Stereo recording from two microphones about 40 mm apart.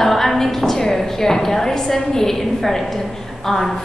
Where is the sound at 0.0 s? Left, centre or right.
Centre.